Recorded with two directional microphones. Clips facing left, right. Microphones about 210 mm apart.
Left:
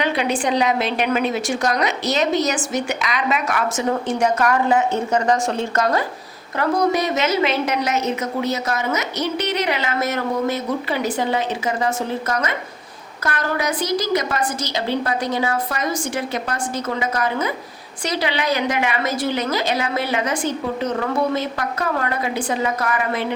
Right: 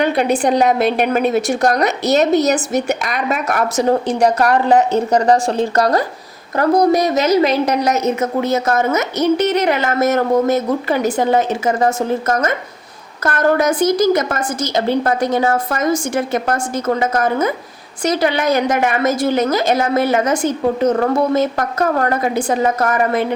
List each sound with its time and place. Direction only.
0.0 s a woman's voice: 50° right (ahead or behind)
2.7 s a woman's voice: 50° right (ahead or behind)